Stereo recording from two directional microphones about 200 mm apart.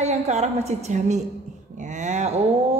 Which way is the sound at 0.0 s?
35° right (ahead or behind).